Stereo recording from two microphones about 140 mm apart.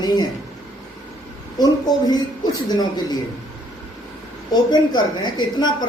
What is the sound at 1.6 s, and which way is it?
Speech, 30° left (ahead or behind).